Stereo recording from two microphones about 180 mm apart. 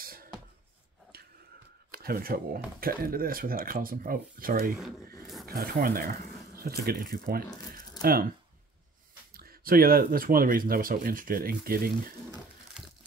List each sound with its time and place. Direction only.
0.0 s a sound: 55° right (ahead or behind)
1.9 s speech: 55° right (ahead or behind)
5.2 s roaring cats: centre (ahead or behind)
5.5 s speech: 55° right (ahead or behind)
9.3 s speech: 55° right (ahead or behind)